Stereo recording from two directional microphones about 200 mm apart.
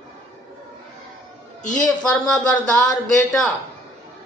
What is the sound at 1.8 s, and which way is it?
Speech, 5° left (ahead or behind).